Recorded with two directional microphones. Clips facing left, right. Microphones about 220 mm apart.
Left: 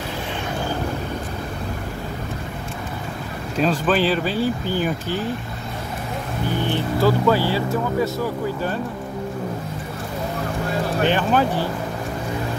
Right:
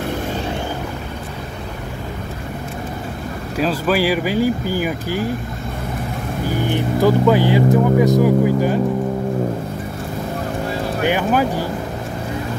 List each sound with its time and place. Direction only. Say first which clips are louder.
3.5 s speech: right 1 dB; 5° right (ahead or behind)
6.6 s speech: right 3 dB; 15° right (ahead or behind)
11.0 s speech: right 2 dB; 10° right (ahead or behind)